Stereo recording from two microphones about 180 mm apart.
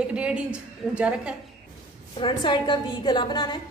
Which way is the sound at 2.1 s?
25° left (ahead or behind).